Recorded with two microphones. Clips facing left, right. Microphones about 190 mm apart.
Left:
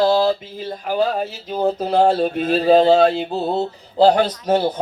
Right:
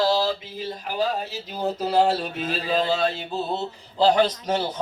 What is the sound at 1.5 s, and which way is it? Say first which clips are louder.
Mantra: left 4 dB; 55° left (ahead or behind).